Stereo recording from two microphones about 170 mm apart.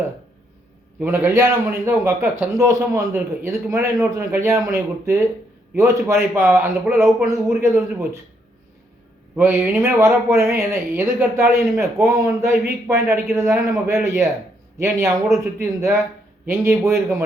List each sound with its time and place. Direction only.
0.9 s speech: 15° right (ahead or behind)
9.3 s speech: 10° right (ahead or behind)